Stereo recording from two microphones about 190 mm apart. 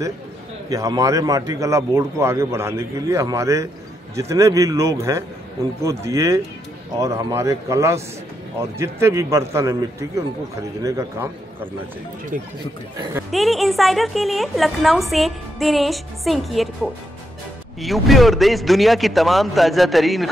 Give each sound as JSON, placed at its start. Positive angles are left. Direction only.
{"t": 0.7, "sound": "a man's voice", "side_deg": -20}
{"t": 13.3, "sound": "a woman's voice", "side_deg": 0}